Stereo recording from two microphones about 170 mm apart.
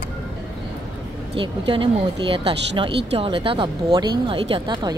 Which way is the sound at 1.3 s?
30° right (ahead or behind).